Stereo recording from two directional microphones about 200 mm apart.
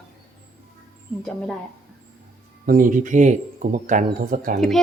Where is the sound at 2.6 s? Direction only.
45° right (ahead or behind).